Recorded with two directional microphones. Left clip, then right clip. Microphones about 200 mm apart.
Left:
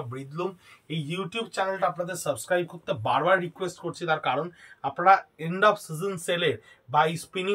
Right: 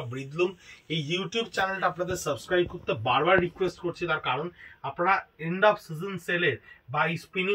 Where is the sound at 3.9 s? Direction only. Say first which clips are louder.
Left 6 dB; 15° left (ahead or behind).